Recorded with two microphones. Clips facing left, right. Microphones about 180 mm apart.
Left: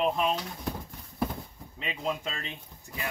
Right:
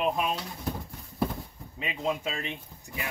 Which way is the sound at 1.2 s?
Centre (ahead or behind).